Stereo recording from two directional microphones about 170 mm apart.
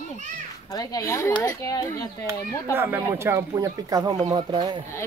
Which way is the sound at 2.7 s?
10° right (ahead or behind).